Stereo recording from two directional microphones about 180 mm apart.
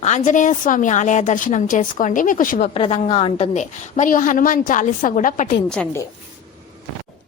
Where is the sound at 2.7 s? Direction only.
30° left (ahead or behind).